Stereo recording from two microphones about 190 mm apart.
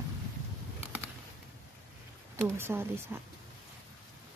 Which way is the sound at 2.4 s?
10° right (ahead or behind).